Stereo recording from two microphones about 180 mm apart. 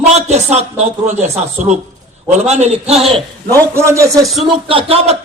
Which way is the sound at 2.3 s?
40° right (ahead or behind).